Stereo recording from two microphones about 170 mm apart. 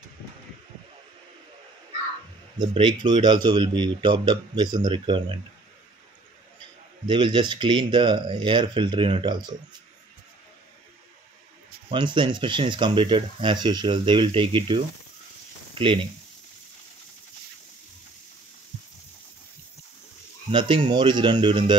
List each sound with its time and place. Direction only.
2.6 s speech: 25° right (ahead or behind)
7.1 s speech: 25° right (ahead or behind)
11.9 s speech: 30° right (ahead or behind)
20.5 s speech: 30° right (ahead or behind)